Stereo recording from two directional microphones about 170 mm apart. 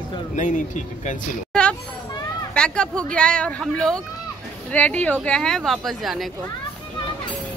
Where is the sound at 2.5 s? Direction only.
5° left (ahead or behind).